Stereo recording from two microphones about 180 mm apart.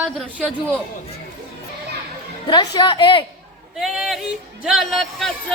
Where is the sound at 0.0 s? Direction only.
5° right (ahead or behind).